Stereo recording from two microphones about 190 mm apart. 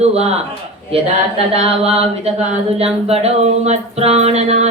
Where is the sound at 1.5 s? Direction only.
30° right (ahead or behind).